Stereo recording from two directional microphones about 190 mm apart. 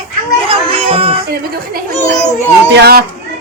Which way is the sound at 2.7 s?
60° right (ahead or behind).